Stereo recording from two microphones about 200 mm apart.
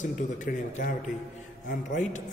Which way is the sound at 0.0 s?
40° left (ahead or behind).